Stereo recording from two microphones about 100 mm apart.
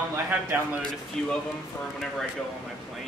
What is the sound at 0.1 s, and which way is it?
Speech, 20° right (ahead or behind).